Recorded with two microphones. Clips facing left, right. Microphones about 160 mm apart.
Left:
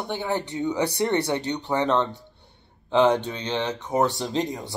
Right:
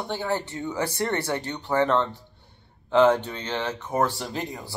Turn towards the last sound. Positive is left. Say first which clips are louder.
# left 3 dB
turn(degrees=20)  # may be behind; listen again after turning